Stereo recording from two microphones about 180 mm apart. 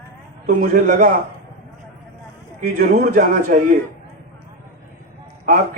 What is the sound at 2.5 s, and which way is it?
Speech, 50° right (ahead or behind).